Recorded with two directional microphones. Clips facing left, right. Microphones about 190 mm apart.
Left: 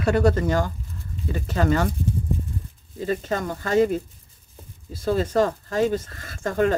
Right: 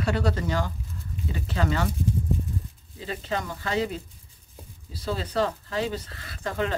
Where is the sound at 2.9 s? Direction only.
45° left (ahead or behind).